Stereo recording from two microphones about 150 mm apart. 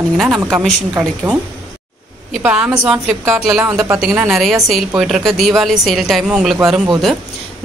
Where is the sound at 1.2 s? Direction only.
15° right (ahead or behind).